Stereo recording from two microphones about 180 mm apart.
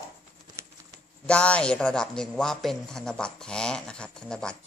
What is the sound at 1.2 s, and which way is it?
A man's voice, 5° left (ahead or behind).